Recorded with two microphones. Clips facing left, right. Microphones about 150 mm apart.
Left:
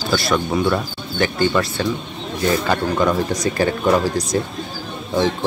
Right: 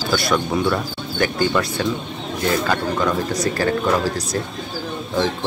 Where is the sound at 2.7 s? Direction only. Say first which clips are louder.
Left 2 dB; 15° left (ahead or behind).